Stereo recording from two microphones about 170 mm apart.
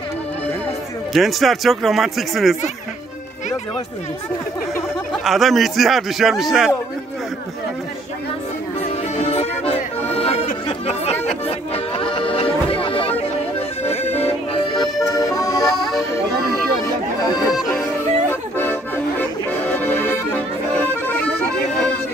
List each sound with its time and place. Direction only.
1.1 s speech: centre (ahead or behind)
5.1 s speech: centre (ahead or behind)
9.1 s accordion: 35° left (ahead or behind)
11.2 s music: 35° left (ahead or behind)
14.5 s accordion: 25° left (ahead or behind)
18.3 s music: 10° left (ahead or behind)